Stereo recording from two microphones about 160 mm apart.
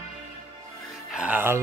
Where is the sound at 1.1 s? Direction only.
5° right (ahead or behind).